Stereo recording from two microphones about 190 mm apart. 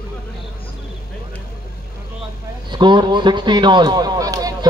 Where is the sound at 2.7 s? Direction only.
25° right (ahead or behind).